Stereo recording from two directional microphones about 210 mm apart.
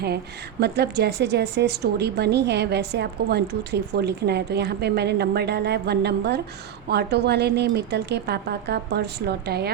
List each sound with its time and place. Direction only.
0.6 s a woman's voice: 50° right (ahead or behind)